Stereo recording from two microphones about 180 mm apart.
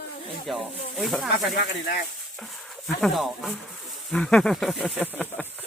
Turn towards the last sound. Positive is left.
turn(degrees=10)  # may be behind; listen again after turning